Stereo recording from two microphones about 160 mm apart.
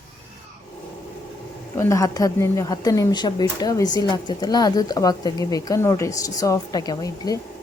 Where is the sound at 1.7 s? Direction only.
20° left (ahead or behind).